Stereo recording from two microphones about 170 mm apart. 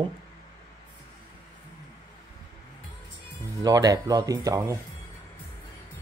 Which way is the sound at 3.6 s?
20° right (ahead or behind).